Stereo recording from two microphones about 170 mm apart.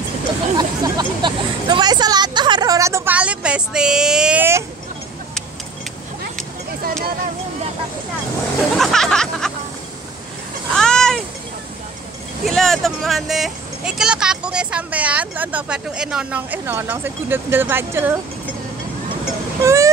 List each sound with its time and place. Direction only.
0.6 s speech: 25° right (ahead or behind)
8.7 s speech: centre (ahead or behind)
10.7 s a sound: 5° left (ahead or behind)
12.4 s speech: centre (ahead or behind); by 18.2 s 15° right (ahead or behind)
19.6 s vehicle: 15° right (ahead or behind)